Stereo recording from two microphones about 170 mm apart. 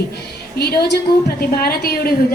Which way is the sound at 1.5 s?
60° left (ahead or behind).